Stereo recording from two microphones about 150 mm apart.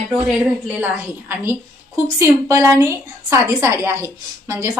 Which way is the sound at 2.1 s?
20° right (ahead or behind).